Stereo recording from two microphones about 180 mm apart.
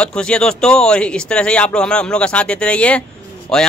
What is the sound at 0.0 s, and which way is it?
Speech, 5° left (ahead or behind).